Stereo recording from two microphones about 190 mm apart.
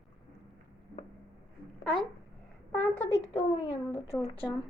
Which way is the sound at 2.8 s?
10° left (ahead or behind).